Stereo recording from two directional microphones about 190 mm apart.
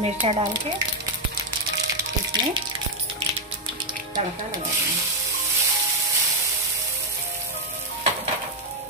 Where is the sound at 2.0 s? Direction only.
20° right (ahead or behind).